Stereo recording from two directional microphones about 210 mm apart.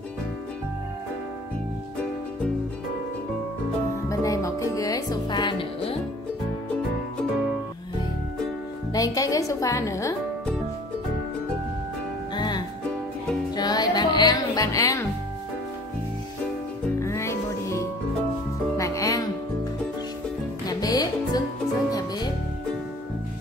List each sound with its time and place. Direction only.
4.1 s music: 15° left (ahead or behind)
8.9 s speech: 15° left (ahead or behind)
12.4 s music: 20° left (ahead or behind)
17.0 s music: 15° left (ahead or behind)
20.6 s music: 20° left (ahead or behind)